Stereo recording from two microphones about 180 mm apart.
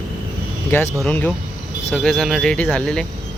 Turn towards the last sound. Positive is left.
turn(degrees=5)  # may be behind; listen again after turning